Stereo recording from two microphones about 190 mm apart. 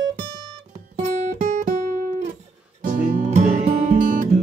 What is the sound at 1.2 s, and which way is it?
Guitar, 40° right (ahead or behind).